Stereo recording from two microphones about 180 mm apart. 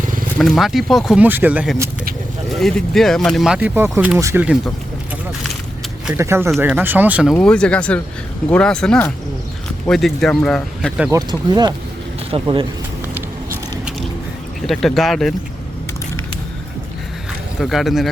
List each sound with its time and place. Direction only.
0.3 s speech: centre (ahead or behind)
6.1 s speech: 15° right (ahead or behind)
7.3 s speech: 5° left (ahead or behind)
11.1 s speech: 25° right (ahead or behind)
14.7 s speech: centre (ahead or behind)
17.6 s speech: centre (ahead or behind)